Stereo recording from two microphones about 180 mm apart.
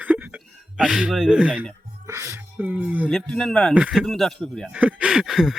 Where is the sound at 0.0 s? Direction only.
10° right (ahead or behind).